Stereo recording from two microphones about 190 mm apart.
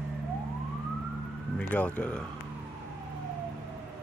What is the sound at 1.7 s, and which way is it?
Speech, 10° left (ahead or behind).